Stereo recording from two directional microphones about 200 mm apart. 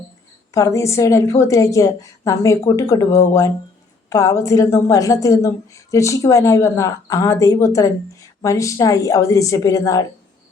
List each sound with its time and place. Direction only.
0.5 s a woman's voice: 15° left (ahead or behind)